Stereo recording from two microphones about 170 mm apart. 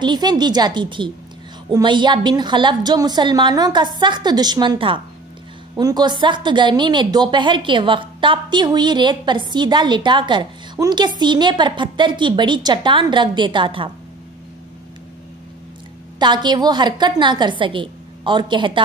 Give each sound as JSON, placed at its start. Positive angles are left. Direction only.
{"t": 0.0, "sound": "a woman's voice", "side_deg": -25}
{"t": 16.2, "sound": "a woman's voice", "side_deg": -25}